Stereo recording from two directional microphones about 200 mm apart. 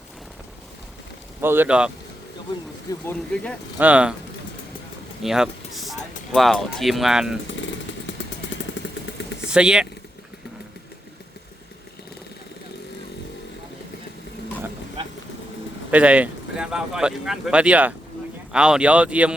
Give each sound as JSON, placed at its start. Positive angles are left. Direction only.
{"t": 1.4, "sound": "speech", "side_deg": -10}
{"t": 2.9, "sound": "speech", "side_deg": 15}
{"t": 3.8, "sound": "speech", "side_deg": -5}
{"t": 5.2, "sound": "speech", "side_deg": 0}
{"t": 8.8, "sound": "vehicle", "side_deg": 65}
{"t": 9.5, "sound": "speech", "side_deg": -5}
{"t": 15.9, "sound": "speech", "side_deg": -5}